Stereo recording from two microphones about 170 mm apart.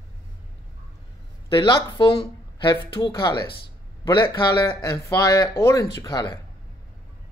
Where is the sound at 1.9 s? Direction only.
30° left (ahead or behind).